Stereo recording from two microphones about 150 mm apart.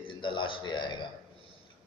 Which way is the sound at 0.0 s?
30° left (ahead or behind).